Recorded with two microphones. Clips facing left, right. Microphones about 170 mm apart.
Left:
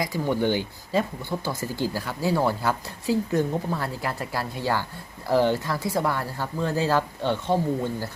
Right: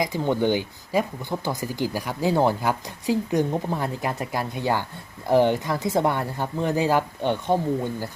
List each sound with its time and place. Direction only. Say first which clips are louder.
0.0 s speech: right 2 dB; 20° right (ahead or behind)